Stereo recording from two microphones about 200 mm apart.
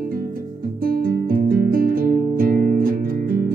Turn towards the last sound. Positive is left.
turn(degrees=-45)  # may be behind; listen again after turning